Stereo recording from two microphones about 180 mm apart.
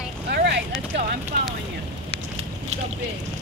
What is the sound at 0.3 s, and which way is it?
Vehicle, 65° right (ahead or behind).